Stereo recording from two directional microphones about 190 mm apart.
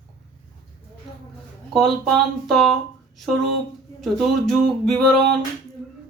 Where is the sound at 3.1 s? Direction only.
Centre (ahead or behind).